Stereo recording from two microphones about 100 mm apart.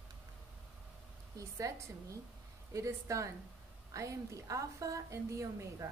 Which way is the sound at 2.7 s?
30° right (ahead or behind).